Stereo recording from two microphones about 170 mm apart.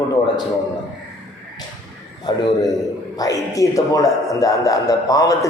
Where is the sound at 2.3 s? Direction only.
25° left (ahead or behind).